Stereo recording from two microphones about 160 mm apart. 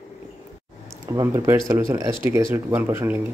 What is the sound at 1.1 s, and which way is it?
Speech, 15° right (ahead or behind).